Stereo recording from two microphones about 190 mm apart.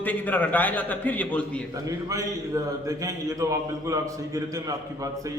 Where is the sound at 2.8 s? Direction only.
15° right (ahead or behind).